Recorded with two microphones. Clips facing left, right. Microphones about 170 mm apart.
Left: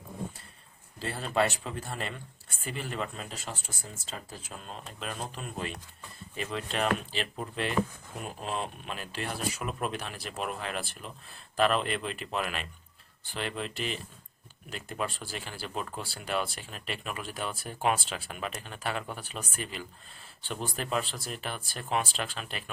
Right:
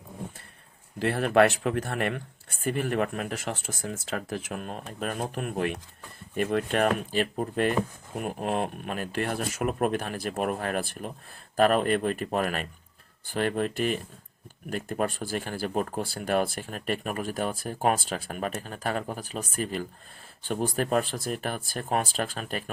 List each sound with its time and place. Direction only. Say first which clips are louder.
0.9 s speech: right 8 dB; 65° right (ahead or behind); by 22.7 s 45° right (ahead or behind)